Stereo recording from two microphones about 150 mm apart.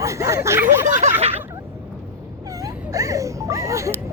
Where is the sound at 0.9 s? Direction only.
55° right (ahead or behind).